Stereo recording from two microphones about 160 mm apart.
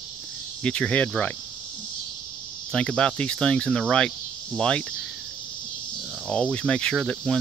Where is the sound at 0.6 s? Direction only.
5° left (ahead or behind).